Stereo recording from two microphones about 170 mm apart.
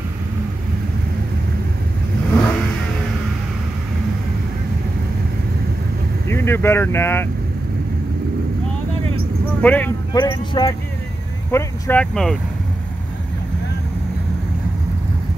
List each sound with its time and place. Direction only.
6.2 s speech: 15° left (ahead or behind)
9.6 s speech: 10° left (ahead or behind)
10.1 s speech: 25° left (ahead or behind)
11.5 s speech: 10° left (ahead or behind)